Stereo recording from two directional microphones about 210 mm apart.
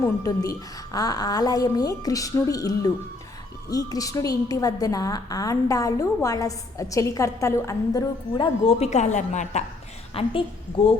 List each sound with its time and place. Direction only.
0.0 s a woman's voice: 15° left (ahead or behind)